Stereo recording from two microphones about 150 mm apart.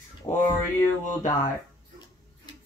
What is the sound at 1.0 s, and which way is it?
Speech, 55° left (ahead or behind).